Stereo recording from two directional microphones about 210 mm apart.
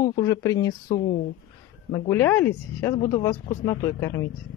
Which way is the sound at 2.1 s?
10° left (ahead or behind).